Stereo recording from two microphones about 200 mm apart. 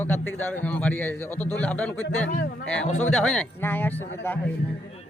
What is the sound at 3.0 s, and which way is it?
Speech, 5° left (ahead or behind).